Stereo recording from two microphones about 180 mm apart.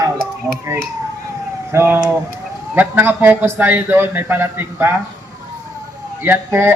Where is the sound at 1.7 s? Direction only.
10° right (ahead or behind).